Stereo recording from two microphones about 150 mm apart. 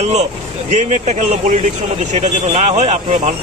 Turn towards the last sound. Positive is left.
turn(degrees=-45)  # may be behind; listen again after turning